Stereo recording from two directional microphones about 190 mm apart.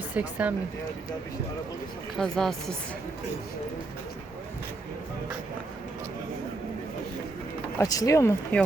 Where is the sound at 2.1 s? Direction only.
5° left (ahead or behind).